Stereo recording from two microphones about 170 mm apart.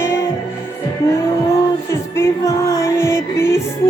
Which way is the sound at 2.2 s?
20° left (ahead or behind).